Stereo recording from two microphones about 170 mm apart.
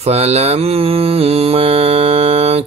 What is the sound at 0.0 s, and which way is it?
Mantra, 40° right (ahead or behind).